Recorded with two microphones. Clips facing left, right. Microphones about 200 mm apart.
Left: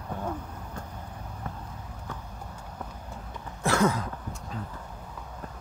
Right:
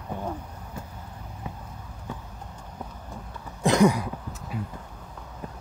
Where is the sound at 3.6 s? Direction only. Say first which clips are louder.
Right 5 dB; 15° right (ahead or behind).